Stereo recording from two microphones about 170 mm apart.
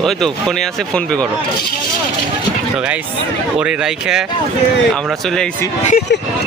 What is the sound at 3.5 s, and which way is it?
Speech, 5° right (ahead or behind).